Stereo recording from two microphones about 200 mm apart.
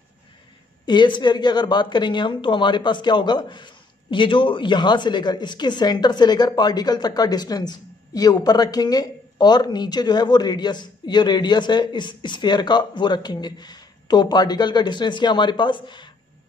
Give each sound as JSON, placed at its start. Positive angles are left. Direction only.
{"t": 0.8, "sound": "speech", "side_deg": 20}